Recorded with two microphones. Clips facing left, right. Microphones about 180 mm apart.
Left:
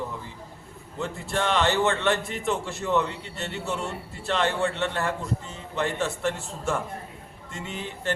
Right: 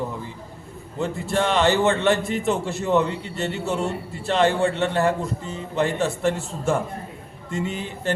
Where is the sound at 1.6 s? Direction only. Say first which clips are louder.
Right 5 dB; 5° right (ahead or behind).